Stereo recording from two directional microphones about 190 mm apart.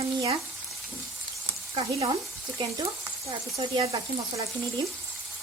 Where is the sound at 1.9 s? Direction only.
15° right (ahead or behind).